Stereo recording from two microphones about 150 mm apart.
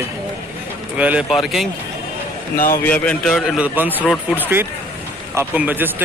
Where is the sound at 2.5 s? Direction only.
70° left (ahead or behind).